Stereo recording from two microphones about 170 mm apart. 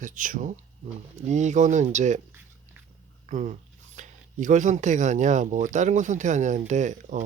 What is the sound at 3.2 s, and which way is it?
Speech, 45° right (ahead or behind).